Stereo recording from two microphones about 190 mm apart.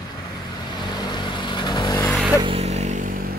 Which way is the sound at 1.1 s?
25° left (ahead or behind).